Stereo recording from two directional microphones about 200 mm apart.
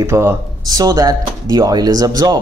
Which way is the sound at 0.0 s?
15° right (ahead or behind).